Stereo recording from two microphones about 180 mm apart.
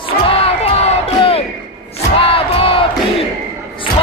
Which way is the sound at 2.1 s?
30° left (ahead or behind).